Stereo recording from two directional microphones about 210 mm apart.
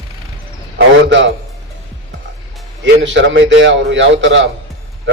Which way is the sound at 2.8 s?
60° right (ahead or behind).